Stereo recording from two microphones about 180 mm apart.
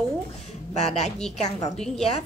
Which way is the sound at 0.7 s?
40° left (ahead or behind).